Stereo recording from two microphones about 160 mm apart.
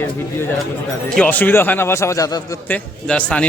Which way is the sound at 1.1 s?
10° left (ahead or behind).